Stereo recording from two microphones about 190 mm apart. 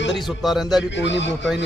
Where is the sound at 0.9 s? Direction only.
70° left (ahead or behind).